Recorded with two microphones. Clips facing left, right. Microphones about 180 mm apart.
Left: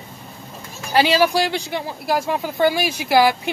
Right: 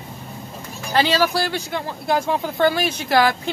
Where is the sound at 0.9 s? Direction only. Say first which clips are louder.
Left 2 dB; 10° left (ahead or behind).